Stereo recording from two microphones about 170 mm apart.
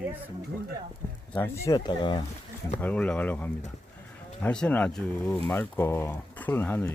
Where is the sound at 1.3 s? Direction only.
15° left (ahead or behind).